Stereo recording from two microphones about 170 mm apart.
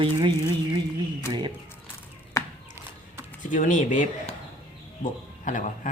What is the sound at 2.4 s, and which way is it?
Chop, 20° left (ahead or behind).